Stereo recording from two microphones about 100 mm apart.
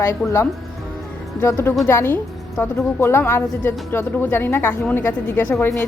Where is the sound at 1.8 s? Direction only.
25° left (ahead or behind).